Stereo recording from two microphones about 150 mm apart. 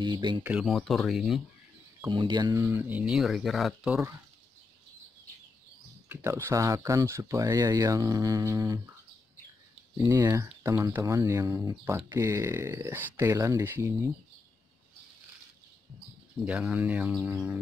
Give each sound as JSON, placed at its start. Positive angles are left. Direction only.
{"t": 0.0, "sound": "speech", "side_deg": -30}
{"t": 0.4, "sound": "speech", "side_deg": -5}
{"t": 2.0, "sound": "speech", "side_deg": -30}
{"t": 2.6, "sound": "speech", "side_deg": -10}
{"t": 6.0, "sound": "speech", "side_deg": -15}
{"t": 9.9, "sound": "speech", "side_deg": -15}
{"t": 16.4, "sound": "speech", "side_deg": -5}